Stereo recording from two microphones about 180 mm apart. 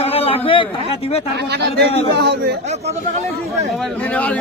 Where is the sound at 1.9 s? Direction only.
35° left (ahead or behind).